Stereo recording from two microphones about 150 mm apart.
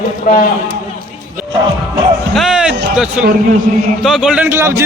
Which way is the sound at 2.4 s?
5° right (ahead or behind).